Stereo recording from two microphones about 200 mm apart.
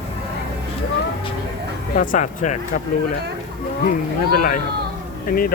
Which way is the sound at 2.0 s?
40° left (ahead or behind).